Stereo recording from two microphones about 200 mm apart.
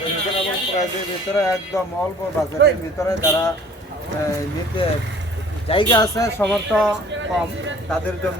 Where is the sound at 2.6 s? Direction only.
55° right (ahead or behind).